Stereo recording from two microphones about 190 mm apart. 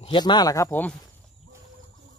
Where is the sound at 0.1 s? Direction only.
20° left (ahead or behind).